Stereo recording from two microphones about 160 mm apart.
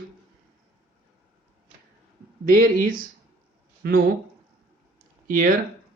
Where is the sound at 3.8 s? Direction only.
75° right (ahead or behind).